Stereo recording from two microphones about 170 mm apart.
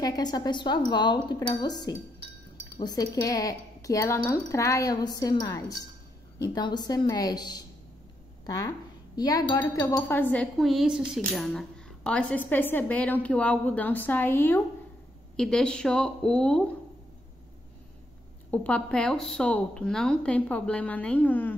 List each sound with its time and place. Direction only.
0.0 s a woman's voice: 25° left (ahead or behind); by 16.6 s 5° left (ahead or behind)
18.5 s a woman's voice: 10° left (ahead or behind)